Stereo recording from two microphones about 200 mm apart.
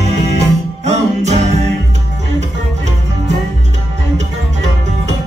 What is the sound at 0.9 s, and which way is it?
Music, 35° right (ahead or behind).